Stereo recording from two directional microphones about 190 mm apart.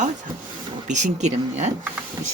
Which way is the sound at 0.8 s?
40° right (ahead or behind).